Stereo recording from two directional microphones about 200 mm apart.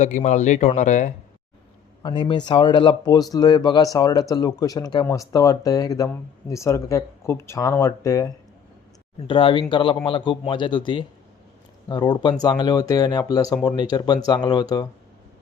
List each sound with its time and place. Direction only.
0.0 s speech: 35° left (ahead or behind)
2.0 s speech: 20° left (ahead or behind)